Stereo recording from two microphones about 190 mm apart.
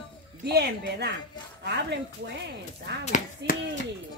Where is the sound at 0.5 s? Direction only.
60° right (ahead or behind).